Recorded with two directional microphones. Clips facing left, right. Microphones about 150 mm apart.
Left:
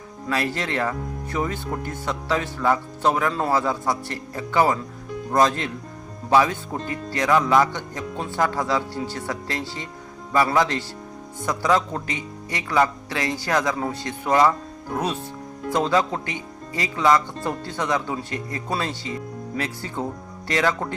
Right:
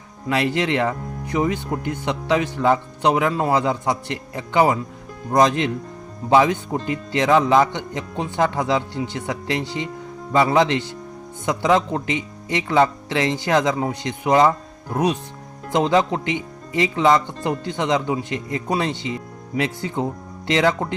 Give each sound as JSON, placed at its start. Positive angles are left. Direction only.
{"t": 0.3, "sound": "speech", "side_deg": -20}